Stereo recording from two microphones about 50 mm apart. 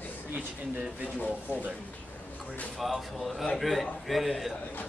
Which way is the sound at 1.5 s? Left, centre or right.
Right.